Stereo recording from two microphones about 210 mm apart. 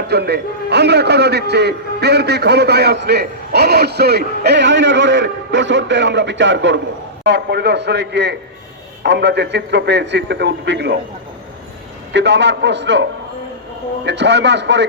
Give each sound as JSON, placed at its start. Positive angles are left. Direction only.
{"t": 0.1, "sound": "a man's voice", "side_deg": -50}
{"t": 12.1, "sound": "a man's voice", "side_deg": -55}